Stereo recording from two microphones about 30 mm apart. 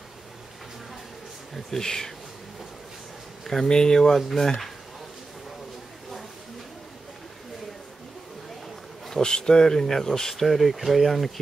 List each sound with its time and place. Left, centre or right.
1.8 s speech: centre
3.6 s speech: left
9.1 s speech: left
10.4 s speech: centre